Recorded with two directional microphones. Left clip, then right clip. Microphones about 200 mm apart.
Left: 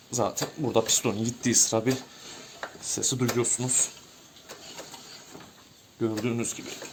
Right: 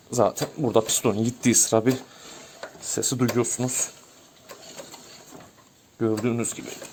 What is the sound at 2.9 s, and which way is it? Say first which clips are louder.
Speech: right 3 dB; 55° right (ahead or behind).